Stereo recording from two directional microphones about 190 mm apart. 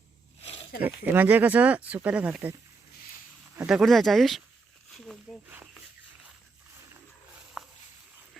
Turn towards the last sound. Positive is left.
turn(degrees=-5)  # may be behind; listen again after turning